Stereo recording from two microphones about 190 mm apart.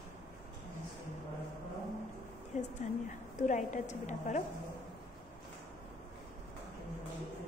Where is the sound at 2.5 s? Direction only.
35° left (ahead or behind).